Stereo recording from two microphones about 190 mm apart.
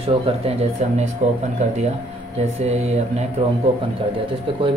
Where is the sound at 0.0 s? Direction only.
30° right (ahead or behind).